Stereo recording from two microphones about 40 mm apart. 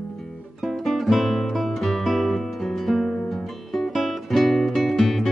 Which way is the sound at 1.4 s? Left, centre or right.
Centre.